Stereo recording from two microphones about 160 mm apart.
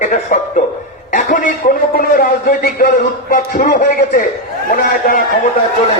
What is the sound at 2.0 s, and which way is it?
A man's voice, 65° left (ahead or behind).